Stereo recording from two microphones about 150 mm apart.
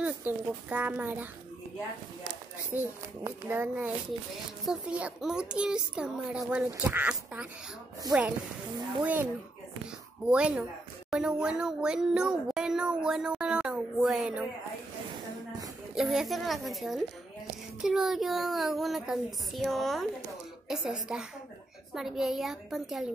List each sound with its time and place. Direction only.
0.0 s a child's voice: 10° right (ahead or behind)
2.7 s a child's voice: 15° right (ahead or behind)
15.9 s speech: 5° right (ahead or behind)